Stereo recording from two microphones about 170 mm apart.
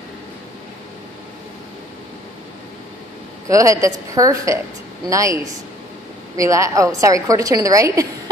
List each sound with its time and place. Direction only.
3.4 s a woman's voice: 20° right (ahead or behind)